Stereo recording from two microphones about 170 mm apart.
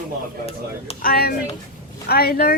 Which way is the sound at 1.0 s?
65° left (ahead or behind).